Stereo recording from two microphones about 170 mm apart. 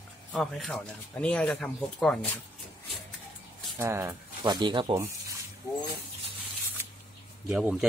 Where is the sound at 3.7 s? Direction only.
15° right (ahead or behind).